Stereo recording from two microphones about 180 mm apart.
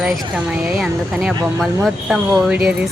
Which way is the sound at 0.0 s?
5° right (ahead or behind).